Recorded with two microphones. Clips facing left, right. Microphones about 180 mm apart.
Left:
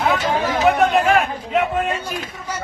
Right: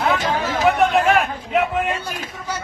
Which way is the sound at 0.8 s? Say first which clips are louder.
Even; centre (ahead or behind).